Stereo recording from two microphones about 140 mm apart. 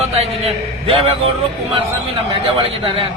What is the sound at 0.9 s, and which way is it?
Speech, 45° right (ahead or behind).